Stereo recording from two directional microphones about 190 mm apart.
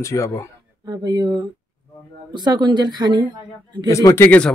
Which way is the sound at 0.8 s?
20° right (ahead or behind).